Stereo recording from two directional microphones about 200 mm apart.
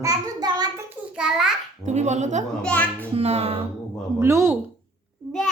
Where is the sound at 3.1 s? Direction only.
35° right (ahead or behind).